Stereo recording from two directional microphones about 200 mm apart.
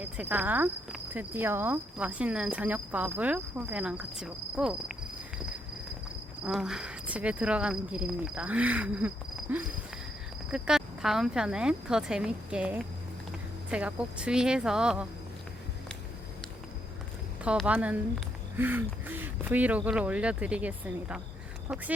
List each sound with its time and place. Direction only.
0.0 s speech: 10° right (ahead or behind)
6.4 s speech: 5° right (ahead or behind)
17.4 s speech: 5° right (ahead or behind)